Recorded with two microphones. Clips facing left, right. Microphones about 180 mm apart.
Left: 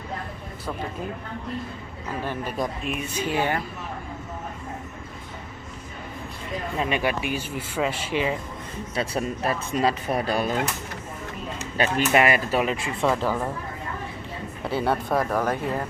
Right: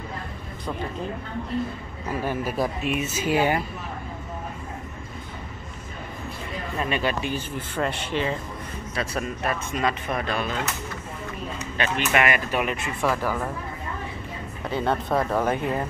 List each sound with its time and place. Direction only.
2.2 s speech: 5° right (ahead or behind)
6.8 s speech: 15° left (ahead or behind)
8.9 s speech: 30° left (ahead or behind)
11.7 s speech: 35° left (ahead or behind)
12.8 s speech: 20° left (ahead or behind)
14.8 s speech: 5° left (ahead or behind)